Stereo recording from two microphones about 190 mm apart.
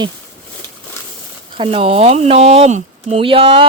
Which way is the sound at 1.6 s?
30° right (ahead or behind).